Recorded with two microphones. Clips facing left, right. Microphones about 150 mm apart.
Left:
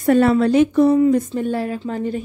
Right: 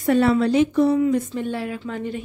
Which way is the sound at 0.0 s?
50° left (ahead or behind).